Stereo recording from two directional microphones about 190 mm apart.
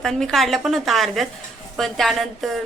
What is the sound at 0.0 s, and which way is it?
Speech, centre (ahead or behind).